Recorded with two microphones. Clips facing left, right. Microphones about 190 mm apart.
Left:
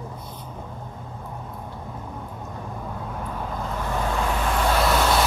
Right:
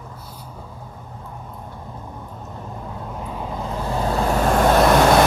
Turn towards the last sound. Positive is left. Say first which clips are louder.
# right 7 dB
turn(degrees=-50)  # may be behind; listen again after turning